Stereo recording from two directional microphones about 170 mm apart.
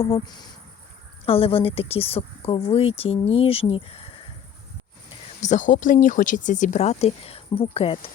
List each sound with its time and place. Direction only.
0.0 s speech: 30° left (ahead or behind)
5.4 s speech: 45° left (ahead or behind)